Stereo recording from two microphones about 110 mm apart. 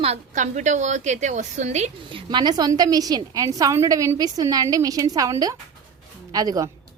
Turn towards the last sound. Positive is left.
turn(degrees=-35)  # may be behind; listen again after turning